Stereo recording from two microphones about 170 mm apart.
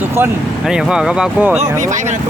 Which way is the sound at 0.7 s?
5° right (ahead or behind).